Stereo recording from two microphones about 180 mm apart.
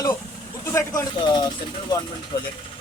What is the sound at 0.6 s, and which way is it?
Speech, 15° left (ahead or behind).